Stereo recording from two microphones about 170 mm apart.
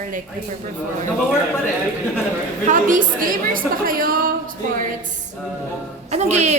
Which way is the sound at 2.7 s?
50° right (ahead or behind).